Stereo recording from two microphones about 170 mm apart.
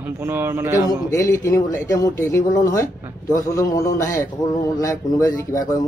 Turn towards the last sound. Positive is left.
turn(degrees=20)  # may be behind; listen again after turning